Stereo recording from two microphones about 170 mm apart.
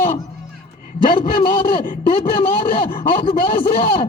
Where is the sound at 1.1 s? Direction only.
30° left (ahead or behind).